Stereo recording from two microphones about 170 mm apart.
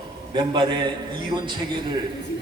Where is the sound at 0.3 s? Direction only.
25° right (ahead or behind).